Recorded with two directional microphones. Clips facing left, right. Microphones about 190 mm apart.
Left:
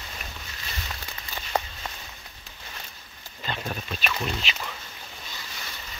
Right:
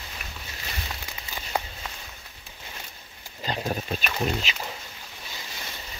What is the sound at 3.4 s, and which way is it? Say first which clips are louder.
Speech: right 4 dB; 35° right (ahead or behind).